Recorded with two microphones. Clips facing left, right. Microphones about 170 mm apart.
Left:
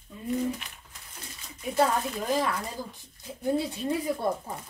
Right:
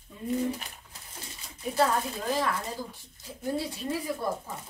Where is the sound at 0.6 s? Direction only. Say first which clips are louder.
Right 1 dB; 35° right (ahead or behind).